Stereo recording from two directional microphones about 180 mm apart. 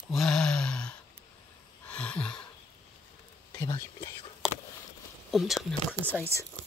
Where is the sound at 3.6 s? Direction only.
15° left (ahead or behind).